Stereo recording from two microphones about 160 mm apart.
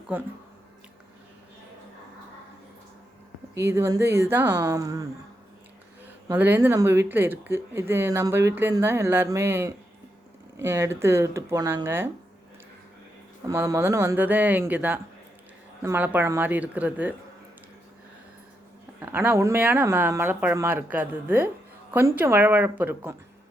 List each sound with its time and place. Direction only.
0.1 s speech: 10° right (ahead or behind)
3.7 s speech: 20° right (ahead or behind)
6.3 s speech: 10° right (ahead or behind)
13.4 s speech: 20° right (ahead or behind)
19.1 s speech: 15° right (ahead or behind)